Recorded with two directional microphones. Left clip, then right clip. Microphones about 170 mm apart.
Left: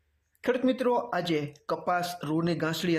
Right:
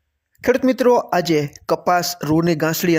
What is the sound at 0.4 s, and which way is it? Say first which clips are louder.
Speech: right 11 dB; 45° right (ahead or behind).